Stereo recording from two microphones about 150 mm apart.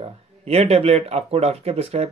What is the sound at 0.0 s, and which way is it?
Speech, 45° right (ahead or behind).